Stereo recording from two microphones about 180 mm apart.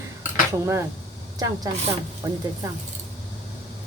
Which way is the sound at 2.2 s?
20° right (ahead or behind).